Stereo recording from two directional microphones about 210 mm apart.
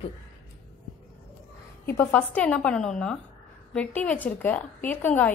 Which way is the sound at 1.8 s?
10° left (ahead or behind).